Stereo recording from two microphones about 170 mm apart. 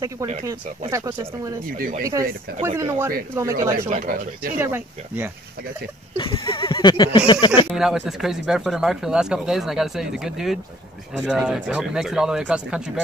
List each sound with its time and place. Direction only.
0.5 s speech: 20° right (ahead or behind)
1.8 s speech: 55° right (ahead or behind)
2.8 s speech: 15° right (ahead or behind)
3.9 s speech: 55° right (ahead or behind)
4.6 s speech: 10° right (ahead or behind)
6.1 s speech: 30° left (ahead or behind)
7.7 s speech: centre (ahead or behind)